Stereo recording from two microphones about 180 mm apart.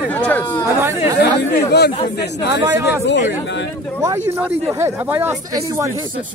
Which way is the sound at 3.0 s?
80° left.